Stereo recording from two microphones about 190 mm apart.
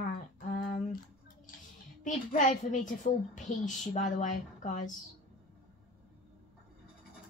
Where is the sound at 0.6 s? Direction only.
40° left (ahead or behind).